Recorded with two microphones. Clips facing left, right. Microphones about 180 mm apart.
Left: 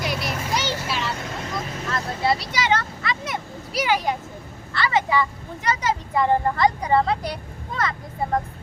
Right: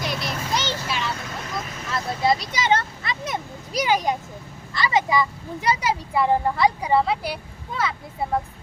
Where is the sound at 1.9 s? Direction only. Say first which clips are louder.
Right 2 dB; 15° right (ahead or behind).